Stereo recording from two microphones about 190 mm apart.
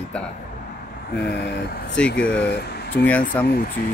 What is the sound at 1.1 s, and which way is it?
Speech, 60° left (ahead or behind).